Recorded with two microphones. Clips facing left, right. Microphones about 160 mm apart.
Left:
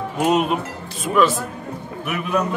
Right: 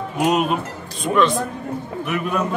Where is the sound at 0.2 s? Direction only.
Centre (ahead or behind).